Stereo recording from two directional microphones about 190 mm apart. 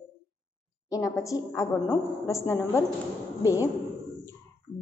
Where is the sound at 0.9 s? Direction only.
15° left (ahead or behind).